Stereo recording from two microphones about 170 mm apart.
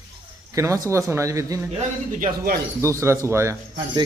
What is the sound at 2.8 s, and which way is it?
Speech, 15° right (ahead or behind).